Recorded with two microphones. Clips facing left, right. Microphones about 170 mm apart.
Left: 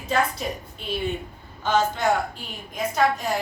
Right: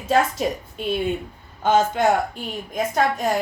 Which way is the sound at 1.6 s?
50° right (ahead or behind).